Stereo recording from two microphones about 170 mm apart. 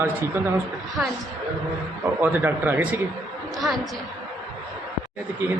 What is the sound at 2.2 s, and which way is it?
A woman's voice, 10° right (ahead or behind).